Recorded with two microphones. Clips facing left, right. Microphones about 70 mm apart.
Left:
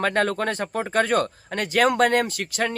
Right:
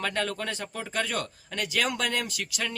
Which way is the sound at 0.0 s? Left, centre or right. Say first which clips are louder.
Left 8 dB; left.